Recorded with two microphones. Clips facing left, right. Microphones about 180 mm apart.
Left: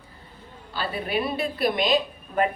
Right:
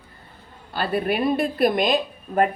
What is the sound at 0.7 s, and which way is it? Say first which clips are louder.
Speech: right 4 dB; 55° right (ahead or behind).